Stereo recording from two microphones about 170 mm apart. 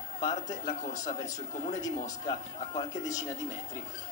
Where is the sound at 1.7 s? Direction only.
20° left (ahead or behind).